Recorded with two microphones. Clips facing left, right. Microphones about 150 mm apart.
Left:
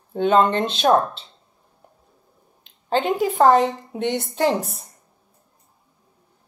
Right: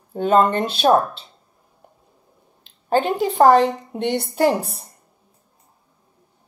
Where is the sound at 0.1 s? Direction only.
5° right (ahead or behind).